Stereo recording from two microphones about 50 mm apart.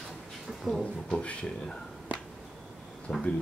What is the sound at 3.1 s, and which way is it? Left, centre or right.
Speech, centre.